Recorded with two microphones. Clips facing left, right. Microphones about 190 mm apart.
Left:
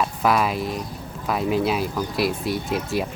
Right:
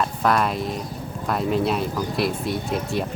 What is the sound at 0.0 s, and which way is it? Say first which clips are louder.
Speech: even; 5° left (ahead or behind).